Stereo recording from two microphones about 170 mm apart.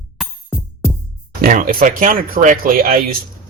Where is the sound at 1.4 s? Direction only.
55° right (ahead or behind).